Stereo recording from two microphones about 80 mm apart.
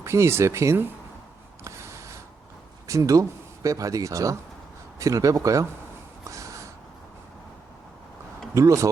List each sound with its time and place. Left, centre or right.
0.0 s speech: right
1.6 s a sound: right
2.8 s speech: right
6.3 s snort: right
8.5 s speech: right